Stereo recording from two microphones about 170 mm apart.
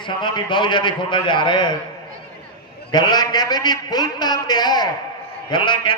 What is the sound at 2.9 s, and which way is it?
A man's voice, 25° left (ahead or behind).